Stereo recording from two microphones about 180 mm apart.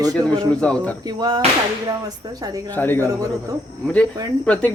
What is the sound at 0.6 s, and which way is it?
Speech, 5° left (ahead or behind).